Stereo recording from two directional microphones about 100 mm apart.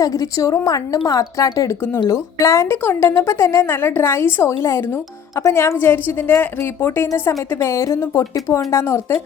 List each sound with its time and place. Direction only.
0.0 s a woman's voice: 35° left (ahead or behind)